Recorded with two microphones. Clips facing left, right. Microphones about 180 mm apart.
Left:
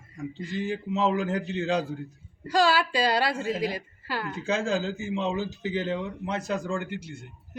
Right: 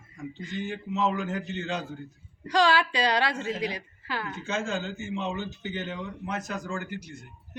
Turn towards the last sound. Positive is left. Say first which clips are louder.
# left 3 dB
turn(degrees=25)  # may be behind; listen again after turning